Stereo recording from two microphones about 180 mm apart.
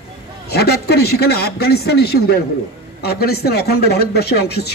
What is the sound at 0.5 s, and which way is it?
Speech, 60° left (ahead or behind).